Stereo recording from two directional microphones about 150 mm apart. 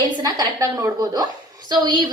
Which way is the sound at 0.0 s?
25° right (ahead or behind).